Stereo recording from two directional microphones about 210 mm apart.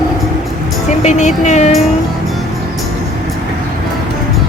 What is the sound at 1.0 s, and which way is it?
Speech, 35° left (ahead or behind).